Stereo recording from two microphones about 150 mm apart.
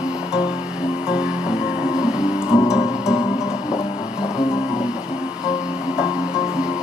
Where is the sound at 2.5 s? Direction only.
15° left (ahead or behind).